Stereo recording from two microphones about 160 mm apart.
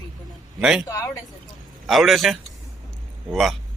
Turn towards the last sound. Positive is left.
turn(degrees=0)  # may be behind; listen again after turning